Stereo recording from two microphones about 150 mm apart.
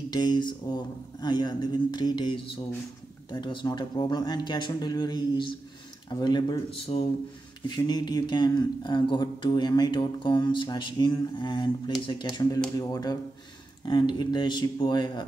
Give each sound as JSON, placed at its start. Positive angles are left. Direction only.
{"t": 0.1, "sound": "speech", "side_deg": 30}